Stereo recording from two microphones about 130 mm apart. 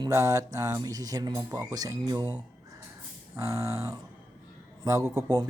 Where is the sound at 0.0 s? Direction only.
25° right (ahead or behind).